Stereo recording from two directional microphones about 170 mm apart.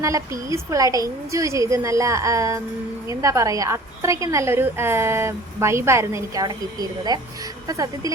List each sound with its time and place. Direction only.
0.0 s a woman's voice: 15° right (ahead or behind)